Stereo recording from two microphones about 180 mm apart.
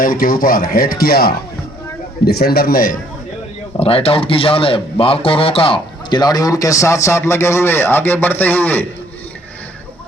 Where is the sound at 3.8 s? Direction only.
30° left (ahead or behind); by 8.8 s 10° left (ahead or behind).